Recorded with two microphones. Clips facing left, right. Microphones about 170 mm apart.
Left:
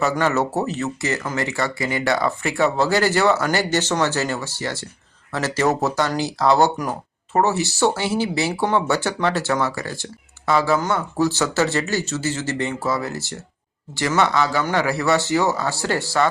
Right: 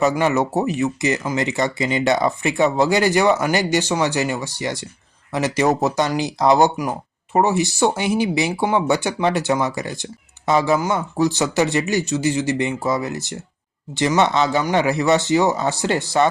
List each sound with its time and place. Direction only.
0.0 s speech: 15° right (ahead or behind)